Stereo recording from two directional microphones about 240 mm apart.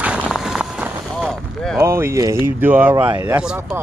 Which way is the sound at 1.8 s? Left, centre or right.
Centre.